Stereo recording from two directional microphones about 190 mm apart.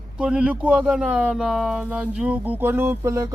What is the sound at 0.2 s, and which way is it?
Speech, 5° right (ahead or behind).